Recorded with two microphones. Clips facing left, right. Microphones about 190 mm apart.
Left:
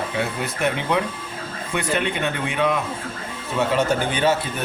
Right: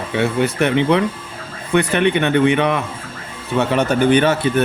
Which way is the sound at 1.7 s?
65° right (ahead or behind).